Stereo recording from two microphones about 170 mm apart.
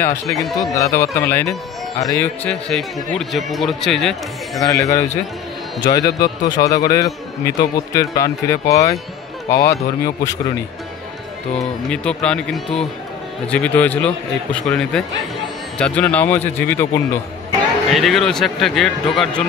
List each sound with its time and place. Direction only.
0.3 s speech: centre (ahead or behind)
0.6 s a man's voice: 20° left (ahead or behind)
2.7 s speech: centre (ahead or behind)
4.6 s speech: 20° left (ahead or behind)
11.9 s a man's voice: 5° left (ahead or behind)
17.9 s speech: centre (ahead or behind)